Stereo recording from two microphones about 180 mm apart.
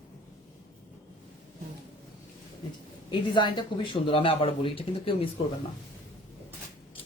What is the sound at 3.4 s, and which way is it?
Speech, 25° left (ahead or behind).